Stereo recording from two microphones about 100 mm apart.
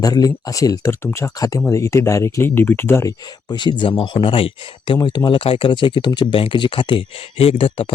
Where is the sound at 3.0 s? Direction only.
50° left (ahead or behind).